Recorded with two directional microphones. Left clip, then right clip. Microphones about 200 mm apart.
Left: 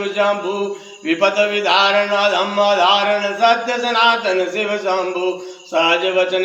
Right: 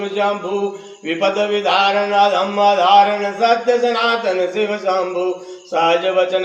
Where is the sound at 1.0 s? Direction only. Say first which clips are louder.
Left 2 dB; 15° right (ahead or behind).